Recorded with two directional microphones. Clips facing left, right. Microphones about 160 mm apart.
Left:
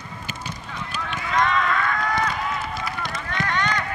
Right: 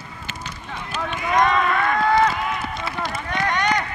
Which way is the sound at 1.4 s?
20° right (ahead or behind).